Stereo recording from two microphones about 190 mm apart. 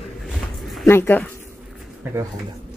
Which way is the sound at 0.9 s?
10° left (ahead or behind).